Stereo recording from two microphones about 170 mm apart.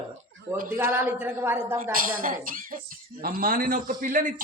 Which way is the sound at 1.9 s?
55° right (ahead or behind).